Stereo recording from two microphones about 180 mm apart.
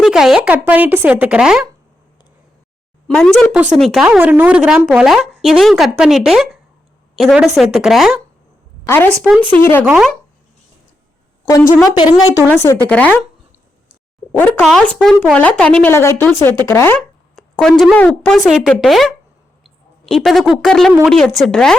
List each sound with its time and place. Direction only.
0.0 s speech: centre (ahead or behind)
3.1 s a woman's voice: centre (ahead or behind)
8.9 s speech: 10° left (ahead or behind)
9.8 s a woman's voice: 5° right (ahead or behind)
11.4 s speech: 15° left (ahead or behind)
14.3 s speech: 5° left (ahead or behind)
17.0 s a woman's voice: centre (ahead or behind)